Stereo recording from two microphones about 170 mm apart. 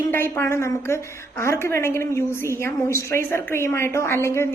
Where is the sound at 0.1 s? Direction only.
15° left (ahead or behind).